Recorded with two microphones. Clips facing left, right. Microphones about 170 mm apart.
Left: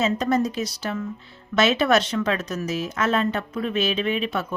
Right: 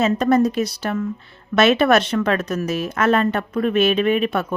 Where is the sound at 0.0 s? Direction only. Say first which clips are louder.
Right 5 dB; 55° right (ahead or behind).